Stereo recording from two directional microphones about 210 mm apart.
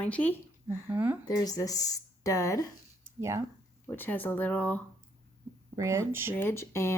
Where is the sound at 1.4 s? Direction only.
15° left (ahead or behind).